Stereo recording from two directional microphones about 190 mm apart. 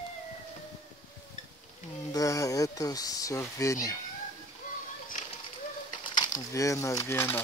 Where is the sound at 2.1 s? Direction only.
20° left (ahead or behind).